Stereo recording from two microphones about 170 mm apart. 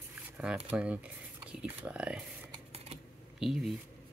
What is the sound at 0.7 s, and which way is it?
Speech, 10° right (ahead or behind).